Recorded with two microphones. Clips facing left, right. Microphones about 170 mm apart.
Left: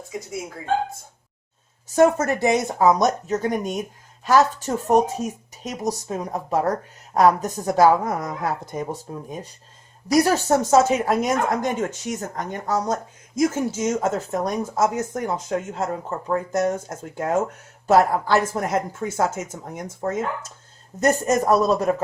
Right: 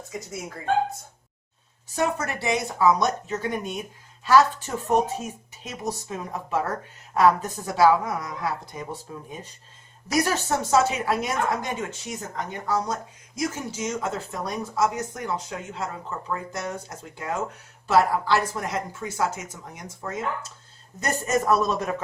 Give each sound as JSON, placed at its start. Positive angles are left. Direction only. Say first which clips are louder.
{"t": 0.1, "sound": "speech", "louder": "left 4 dB", "side_deg": 0}
{"t": 2.0, "sound": "speech", "louder": "left 9 dB", "side_deg": 45}